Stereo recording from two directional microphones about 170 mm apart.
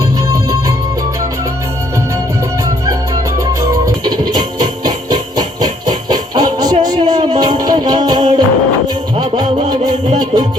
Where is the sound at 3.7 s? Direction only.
20° right (ahead or behind).